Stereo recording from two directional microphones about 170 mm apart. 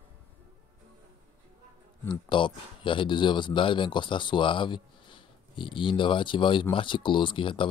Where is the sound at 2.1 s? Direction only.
30° left (ahead or behind).